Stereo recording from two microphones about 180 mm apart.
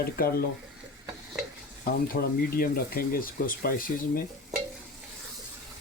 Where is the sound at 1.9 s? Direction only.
55° left (ahead or behind).